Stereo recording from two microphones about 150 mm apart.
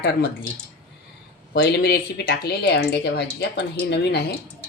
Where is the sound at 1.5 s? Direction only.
90° left.